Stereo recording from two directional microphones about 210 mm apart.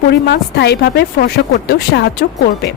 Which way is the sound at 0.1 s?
50° left (ahead or behind).